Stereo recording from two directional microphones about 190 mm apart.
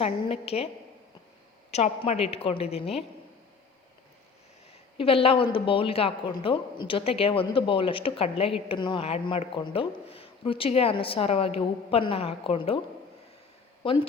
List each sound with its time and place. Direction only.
0.0 s a woman's voice: 30° left (ahead or behind)
1.7 s a woman's voice: 35° left (ahead or behind)
4.9 s a woman's voice: 30° left (ahead or behind)
13.8 s a woman's voice: 25° left (ahead or behind)